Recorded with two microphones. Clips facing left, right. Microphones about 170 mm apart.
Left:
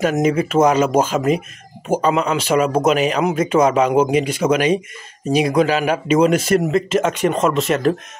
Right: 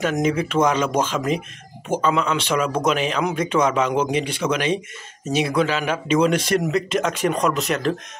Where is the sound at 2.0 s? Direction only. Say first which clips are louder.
Left 2 dB; 40° left (ahead or behind).